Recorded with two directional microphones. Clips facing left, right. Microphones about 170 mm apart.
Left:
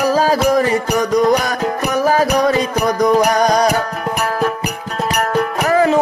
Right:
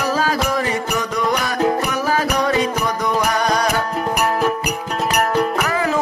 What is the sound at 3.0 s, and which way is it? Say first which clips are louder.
Music: left 8 dB; 40° left (ahead or behind).